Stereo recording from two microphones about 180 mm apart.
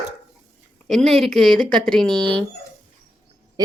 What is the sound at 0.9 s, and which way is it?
Speech, centre (ahead or behind).